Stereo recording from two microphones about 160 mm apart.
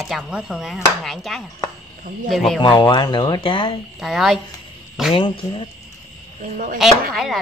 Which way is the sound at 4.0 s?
Centre (ahead or behind).